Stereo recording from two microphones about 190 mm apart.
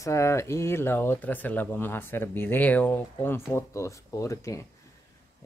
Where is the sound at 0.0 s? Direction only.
15° left (ahead or behind).